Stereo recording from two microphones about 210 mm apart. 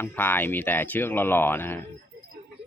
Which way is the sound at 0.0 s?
10° left (ahead or behind).